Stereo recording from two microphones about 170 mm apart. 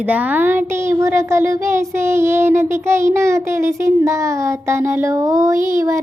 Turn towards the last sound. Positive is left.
turn(degrees=-20)  # may be behind; listen again after turning